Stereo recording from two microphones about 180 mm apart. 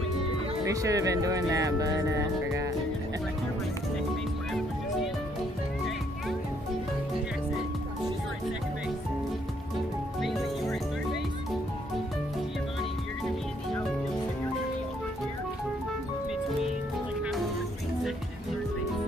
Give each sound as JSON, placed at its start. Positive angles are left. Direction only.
{"t": 0.7, "sound": "speech", "side_deg": -20}
{"t": 10.2, "sound": "music", "side_deg": 0}